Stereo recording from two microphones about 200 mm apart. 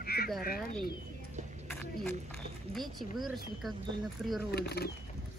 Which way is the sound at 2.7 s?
Centre (ahead or behind).